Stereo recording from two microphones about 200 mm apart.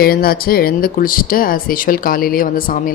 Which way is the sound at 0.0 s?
50° left (ahead or behind).